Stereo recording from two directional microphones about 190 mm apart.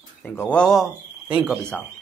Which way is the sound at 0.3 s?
5° left (ahead or behind).